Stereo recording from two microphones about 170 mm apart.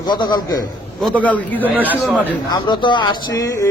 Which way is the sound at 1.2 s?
10° left (ahead or behind).